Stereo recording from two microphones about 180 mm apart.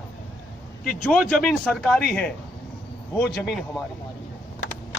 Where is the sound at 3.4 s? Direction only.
Centre (ahead or behind).